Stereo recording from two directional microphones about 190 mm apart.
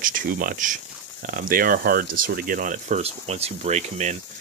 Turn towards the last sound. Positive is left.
turn(degrees=-35)  # may be behind; listen again after turning